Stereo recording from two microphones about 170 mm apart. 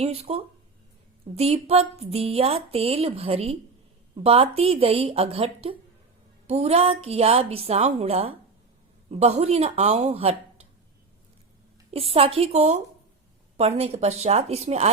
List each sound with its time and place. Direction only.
0.0 s speech: 35° right (ahead or behind)
11.9 s speech: 35° right (ahead or behind)